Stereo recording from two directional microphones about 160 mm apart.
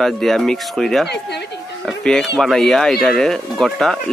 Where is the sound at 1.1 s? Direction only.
90° left.